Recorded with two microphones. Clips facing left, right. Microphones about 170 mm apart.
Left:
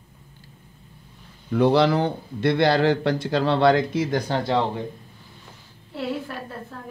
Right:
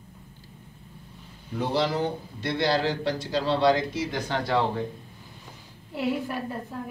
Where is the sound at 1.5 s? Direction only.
70° left (ahead or behind); by 4.2 s 50° left (ahead or behind).